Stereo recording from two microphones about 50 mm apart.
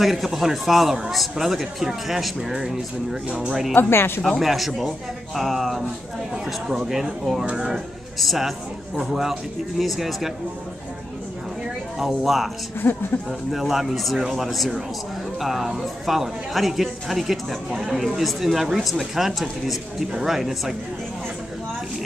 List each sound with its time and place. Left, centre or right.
0.0 s a man's voice: centre
3.3 s speech: right
3.7 s speech: left
4.2 s a man's voice: centre
12.0 s a man's voice: centre
12.8 s speech: left
13.3 s a man's voice: centre